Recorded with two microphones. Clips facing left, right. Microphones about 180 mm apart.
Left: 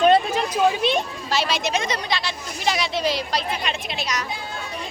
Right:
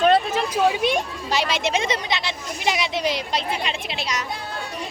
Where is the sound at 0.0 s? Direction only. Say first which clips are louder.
Left 1 dB; centre (ahead or behind).